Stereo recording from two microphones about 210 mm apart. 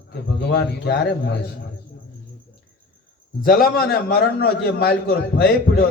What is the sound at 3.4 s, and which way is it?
Speech, centre (ahead or behind).